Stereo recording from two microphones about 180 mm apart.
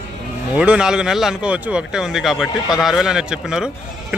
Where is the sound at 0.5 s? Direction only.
5° right (ahead or behind).